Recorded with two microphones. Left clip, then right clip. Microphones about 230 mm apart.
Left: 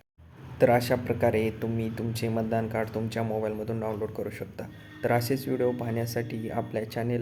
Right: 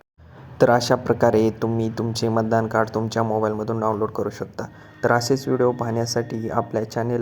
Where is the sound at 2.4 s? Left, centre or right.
Centre.